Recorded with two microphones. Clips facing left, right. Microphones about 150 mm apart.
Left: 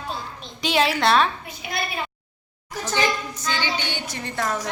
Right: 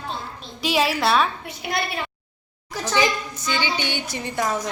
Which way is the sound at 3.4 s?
15° right (ahead or behind).